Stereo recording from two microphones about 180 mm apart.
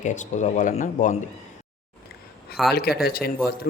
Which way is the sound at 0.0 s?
40° left (ahead or behind).